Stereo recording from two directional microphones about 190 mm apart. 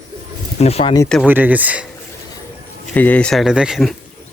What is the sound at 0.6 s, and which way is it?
Speech, 30° left (ahead or behind).